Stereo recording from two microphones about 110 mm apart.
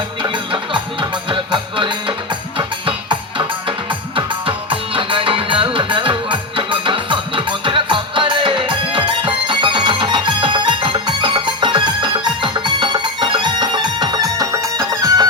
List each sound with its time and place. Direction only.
0.2 s music: 50° right (ahead or behind); by 15.3 s 30° right (ahead or behind)